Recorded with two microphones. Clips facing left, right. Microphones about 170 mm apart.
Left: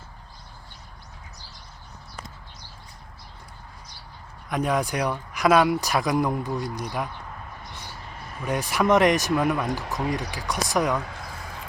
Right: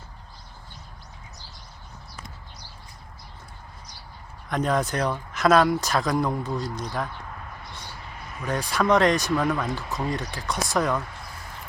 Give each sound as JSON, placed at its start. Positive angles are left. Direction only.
{"t": 4.4, "sound": "speech", "side_deg": 10}
{"t": 8.4, "sound": "speech", "side_deg": 15}